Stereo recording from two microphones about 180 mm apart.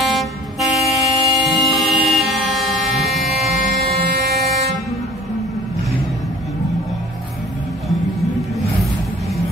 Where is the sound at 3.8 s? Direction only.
65° right (ahead or behind).